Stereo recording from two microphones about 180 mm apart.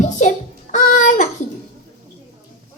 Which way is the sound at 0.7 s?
45° left (ahead or behind).